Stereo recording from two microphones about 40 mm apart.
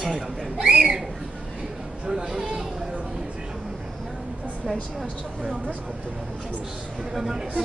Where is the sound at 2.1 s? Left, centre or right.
Centre.